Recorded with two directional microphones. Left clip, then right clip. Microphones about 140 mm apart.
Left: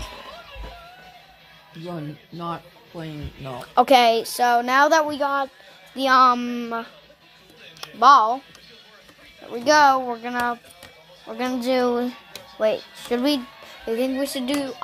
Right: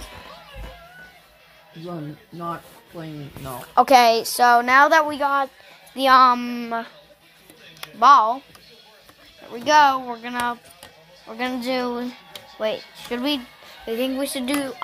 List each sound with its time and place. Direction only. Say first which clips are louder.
1.9 s speech: even; 30° left (ahead or behind)
3.4 s speech: even; 15° left (ahead or behind); by 4.3 s centre (ahead or behind)
4.3 s speech: right 4 dB; 15° right (ahead or behind)
4.6 s a woman's voice: right 2 dB; centre (ahead or behind)
6.3 s speech: right 1 dB; 15° left (ahead or behind)
7.8 s speech: even; 15° left (ahead or behind)
9.5 s speech: even; 20° left (ahead or behind)
13.8 s a woman's voice: left 1 dB; centre (ahead or behind)
14.1 s speech: even; 15° right (ahead or behind)